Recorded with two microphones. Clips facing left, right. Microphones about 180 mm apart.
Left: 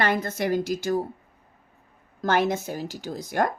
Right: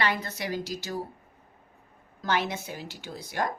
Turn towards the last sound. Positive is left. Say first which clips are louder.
# left 6 dB
turn(degrees=45)  # may be behind; listen again after turning